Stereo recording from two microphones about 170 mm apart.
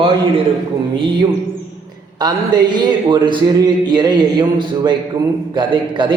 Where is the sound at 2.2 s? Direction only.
25° right (ahead or behind).